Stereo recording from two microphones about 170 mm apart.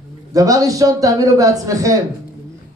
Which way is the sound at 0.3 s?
20° right (ahead or behind).